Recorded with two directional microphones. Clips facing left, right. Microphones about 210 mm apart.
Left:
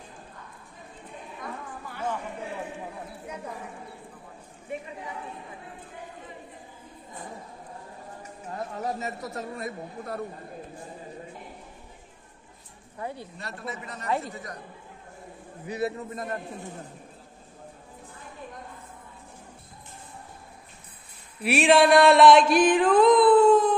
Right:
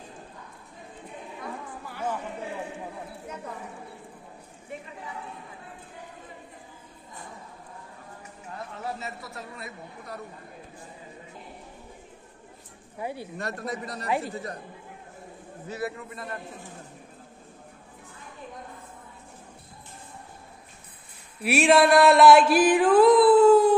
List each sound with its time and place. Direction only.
1.4 s chatter: 10° right (ahead or behind)
8.5 s speech: 40° left (ahead or behind)
13.0 s a woman's voice: 10° right (ahead or behind)
13.4 s a man's voice: 45° right (ahead or behind); by 14.6 s 30° right (ahead or behind)
15.6 s a man's voice: 15° left (ahead or behind)
16.0 s a man's voice: 45° left (ahead or behind)
21.4 s a sound: centre (ahead or behind)